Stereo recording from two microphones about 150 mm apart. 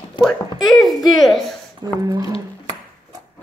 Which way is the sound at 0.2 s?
Centre (ahead or behind).